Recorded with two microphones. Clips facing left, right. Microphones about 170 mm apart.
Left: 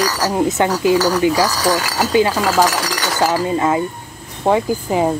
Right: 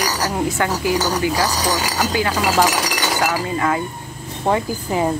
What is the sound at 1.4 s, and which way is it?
Speech, 20° right (ahead or behind).